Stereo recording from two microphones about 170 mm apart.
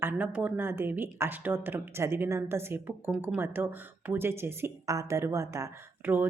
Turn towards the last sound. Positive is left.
turn(degrees=-10)  # may be behind; listen again after turning